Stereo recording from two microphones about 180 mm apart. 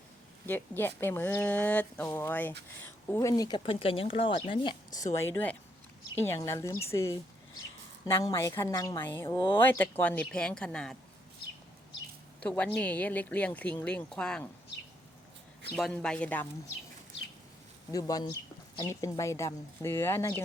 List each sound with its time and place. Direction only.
0.4 s speech: 10° left (ahead or behind); by 4.7 s 30° left (ahead or behind)
5.1 s speech: 15° left (ahead or behind)
12.4 s speech: 5° left (ahead or behind)
15.7 s speech: 5° left (ahead or behind)
17.9 s speech: 20° left (ahead or behind)